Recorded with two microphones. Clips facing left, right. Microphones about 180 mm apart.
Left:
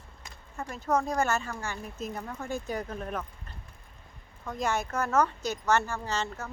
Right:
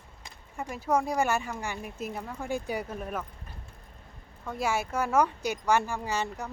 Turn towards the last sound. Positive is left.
turn(degrees=-15)  # may be behind; listen again after turning